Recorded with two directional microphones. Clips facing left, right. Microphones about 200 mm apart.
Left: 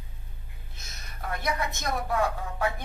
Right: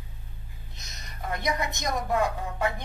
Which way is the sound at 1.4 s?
15° right (ahead or behind).